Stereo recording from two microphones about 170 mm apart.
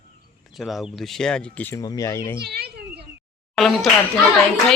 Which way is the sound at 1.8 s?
20° left (ahead or behind).